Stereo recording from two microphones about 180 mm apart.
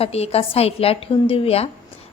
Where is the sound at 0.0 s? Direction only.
35° left (ahead or behind).